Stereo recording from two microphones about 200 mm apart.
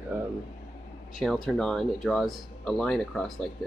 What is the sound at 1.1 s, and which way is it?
Speech, centre (ahead or behind).